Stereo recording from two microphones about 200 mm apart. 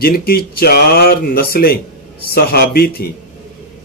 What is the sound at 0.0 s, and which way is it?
Speech, 50° left (ahead or behind).